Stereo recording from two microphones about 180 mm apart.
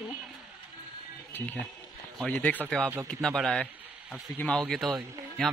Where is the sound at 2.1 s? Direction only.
5° left (ahead or behind).